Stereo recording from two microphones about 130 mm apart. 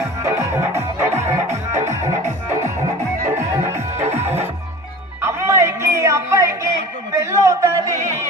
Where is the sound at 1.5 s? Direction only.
60° right (ahead or behind).